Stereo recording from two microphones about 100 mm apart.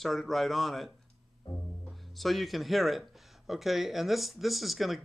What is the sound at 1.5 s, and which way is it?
Music, 60° left (ahead or behind).